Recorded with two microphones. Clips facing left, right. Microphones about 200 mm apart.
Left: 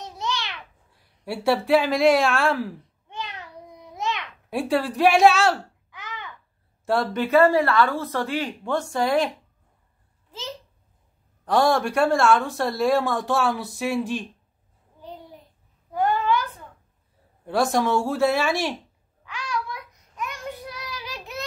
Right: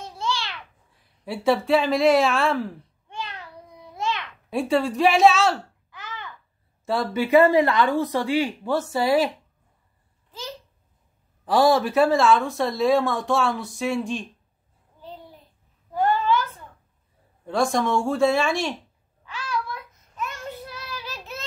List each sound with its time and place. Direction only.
0.1 s babbling: 20° left (ahead or behind)
1.2 s speech: centre (ahead or behind)
3.1 s a sound: 20° left (ahead or behind)
3.9 s babbling: 20° left (ahead or behind)
4.5 s speech: centre (ahead or behind)
5.9 s babbling: 15° left (ahead or behind)
6.9 s speech: centre (ahead or behind)
7.2 s a woman's voice: 15° right (ahead or behind)
11.4 s speech: 5° right (ahead or behind)
15.9 s a sound: 15° left (ahead or behind)
17.5 s speech: centre (ahead or behind)
19.3 s child singing: 15° left (ahead or behind)